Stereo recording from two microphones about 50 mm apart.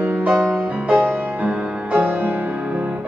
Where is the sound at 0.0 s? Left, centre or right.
Right.